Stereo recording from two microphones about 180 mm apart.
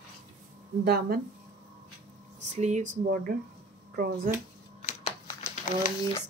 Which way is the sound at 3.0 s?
55° right (ahead or behind).